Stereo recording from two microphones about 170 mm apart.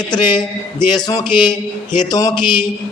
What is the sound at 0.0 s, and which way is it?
A man's voice, 25° left (ahead or behind).